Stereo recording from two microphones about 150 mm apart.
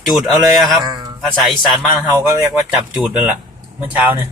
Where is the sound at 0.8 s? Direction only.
25° right (ahead or behind).